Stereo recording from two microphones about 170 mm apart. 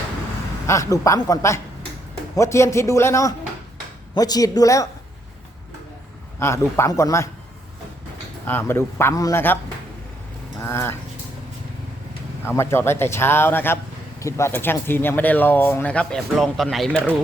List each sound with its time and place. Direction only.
0.7 s speech: 20° left (ahead or behind)
6.4 s speech: 15° left (ahead or behind)
8.4 s speech: 10° left (ahead or behind)
10.6 s speech: 15° left (ahead or behind)
12.5 s speech: 15° left (ahead or behind)